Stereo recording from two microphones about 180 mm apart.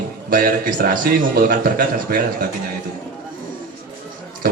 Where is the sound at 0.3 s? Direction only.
55° right (ahead or behind).